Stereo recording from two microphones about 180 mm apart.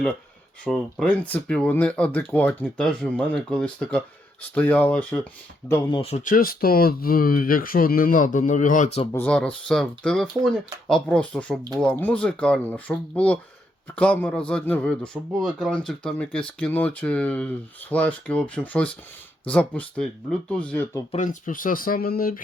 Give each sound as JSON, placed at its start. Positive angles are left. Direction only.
{"t": 0.6, "sound": "speech", "side_deg": 5}
{"t": 5.9, "sound": "speech", "side_deg": 35}
{"t": 9.1, "sound": "speech", "side_deg": 5}
{"t": 21.1, "sound": "speech", "side_deg": 45}